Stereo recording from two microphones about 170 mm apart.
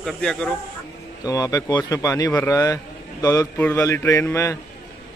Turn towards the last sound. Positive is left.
turn(degrees=15)  # may be behind; listen again after turning